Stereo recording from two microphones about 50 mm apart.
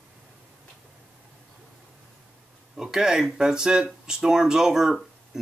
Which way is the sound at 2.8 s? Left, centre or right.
Centre.